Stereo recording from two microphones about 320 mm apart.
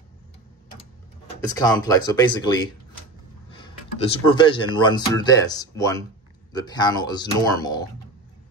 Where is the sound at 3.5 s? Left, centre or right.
Centre.